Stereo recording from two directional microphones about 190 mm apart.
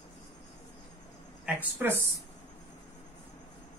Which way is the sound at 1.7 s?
10° right (ahead or behind).